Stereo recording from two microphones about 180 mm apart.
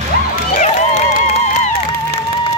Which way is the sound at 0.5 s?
35° left (ahead or behind).